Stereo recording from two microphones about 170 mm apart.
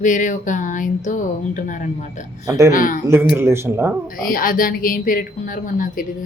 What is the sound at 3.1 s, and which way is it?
Speech, 15° right (ahead or behind).